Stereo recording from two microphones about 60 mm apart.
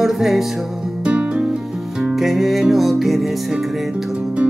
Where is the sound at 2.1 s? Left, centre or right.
Centre.